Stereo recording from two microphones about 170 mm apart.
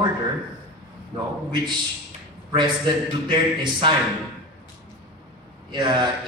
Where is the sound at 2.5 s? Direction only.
25° right (ahead or behind).